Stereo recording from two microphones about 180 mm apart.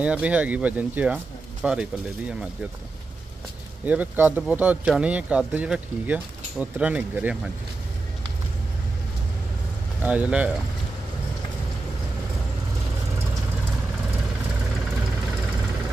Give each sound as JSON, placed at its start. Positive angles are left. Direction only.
{"t": 0.0, "sound": "speech", "side_deg": -5}
{"t": 3.8, "sound": "speech", "side_deg": -10}
{"t": 10.0, "sound": "speech", "side_deg": -10}